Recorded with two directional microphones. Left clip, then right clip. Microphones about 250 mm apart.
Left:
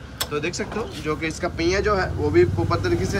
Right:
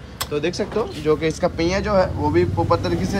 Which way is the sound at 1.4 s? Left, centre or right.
Right.